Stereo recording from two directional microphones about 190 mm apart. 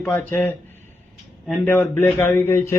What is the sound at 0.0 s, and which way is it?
Speech, 10° left (ahead or behind).